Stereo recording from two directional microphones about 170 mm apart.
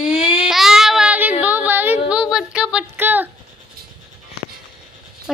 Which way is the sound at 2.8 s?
10° right (ahead or behind).